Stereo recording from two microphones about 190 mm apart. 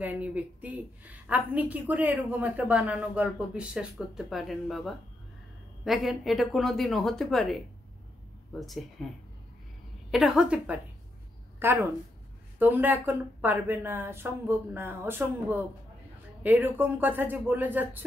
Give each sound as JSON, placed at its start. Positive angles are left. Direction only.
{"t": 0.0, "sound": "a woman's voice", "side_deg": -10}
{"t": 10.1, "sound": "a woman's voice", "side_deg": -5}